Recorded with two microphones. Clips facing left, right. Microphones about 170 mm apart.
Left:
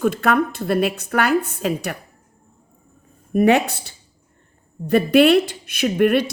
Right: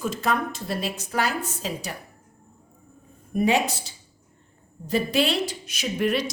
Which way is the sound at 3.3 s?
60° left (ahead or behind).